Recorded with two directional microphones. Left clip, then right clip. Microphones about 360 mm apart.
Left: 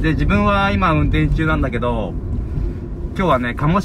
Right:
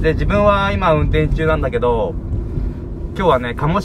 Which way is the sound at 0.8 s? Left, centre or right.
Centre.